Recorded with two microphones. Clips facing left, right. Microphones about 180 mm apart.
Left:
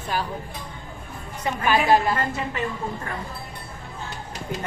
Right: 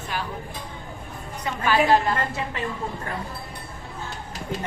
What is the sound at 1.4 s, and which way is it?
Speech, 20° left (ahead or behind).